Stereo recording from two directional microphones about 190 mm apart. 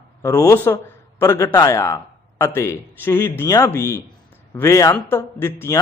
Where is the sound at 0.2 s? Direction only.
15° left (ahead or behind).